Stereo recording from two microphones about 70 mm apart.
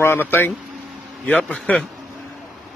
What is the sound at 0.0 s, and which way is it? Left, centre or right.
Speech, left.